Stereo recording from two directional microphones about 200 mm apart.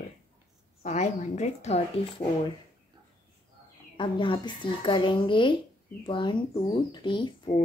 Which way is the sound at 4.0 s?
25° left (ahead or behind).